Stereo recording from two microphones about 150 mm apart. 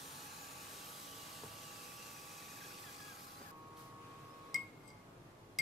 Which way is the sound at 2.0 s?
Centre (ahead or behind).